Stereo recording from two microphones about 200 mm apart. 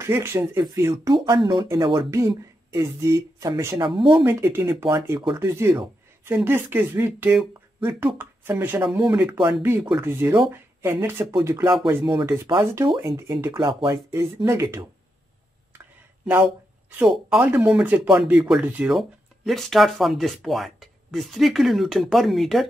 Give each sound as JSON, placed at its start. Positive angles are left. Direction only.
{"t": 0.0, "sound": "speech", "side_deg": -15}
{"t": 4.2, "sound": "speech", "side_deg": -10}
{"t": 12.0, "sound": "speech", "side_deg": -25}
{"t": 16.3, "sound": "speech", "side_deg": -10}